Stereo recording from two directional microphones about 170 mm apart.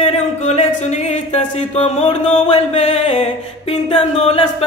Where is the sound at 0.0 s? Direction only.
40° left (ahead or behind).